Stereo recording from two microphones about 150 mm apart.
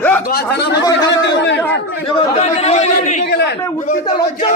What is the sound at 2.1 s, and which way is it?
Speech, 40° left (ahead or behind).